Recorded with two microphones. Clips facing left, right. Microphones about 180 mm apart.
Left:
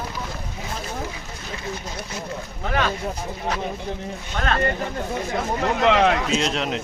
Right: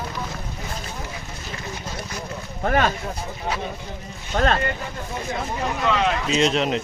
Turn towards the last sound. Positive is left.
turn(degrees=0)  # may be behind; listen again after turning